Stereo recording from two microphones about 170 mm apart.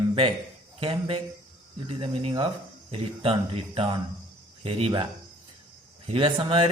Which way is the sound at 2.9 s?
35° right (ahead or behind).